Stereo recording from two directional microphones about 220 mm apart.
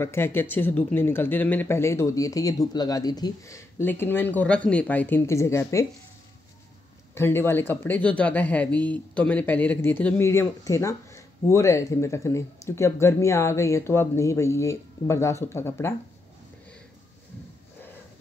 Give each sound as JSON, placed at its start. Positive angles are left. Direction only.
{"t": 0.0, "sound": "speech", "side_deg": 10}
{"t": 7.2, "sound": "speech", "side_deg": 10}